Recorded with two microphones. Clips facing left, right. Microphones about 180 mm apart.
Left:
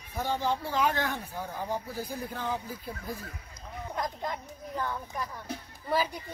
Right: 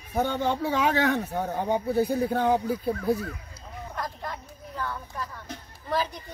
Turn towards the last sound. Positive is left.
turn(degrees=10)  # may be behind; listen again after turning